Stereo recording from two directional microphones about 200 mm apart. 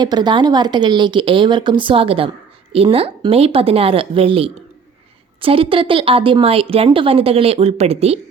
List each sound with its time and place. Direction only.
0.0 s a woman's voice: 20° right (ahead or behind)